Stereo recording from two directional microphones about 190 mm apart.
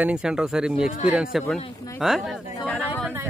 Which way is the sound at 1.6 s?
20° left (ahead or behind).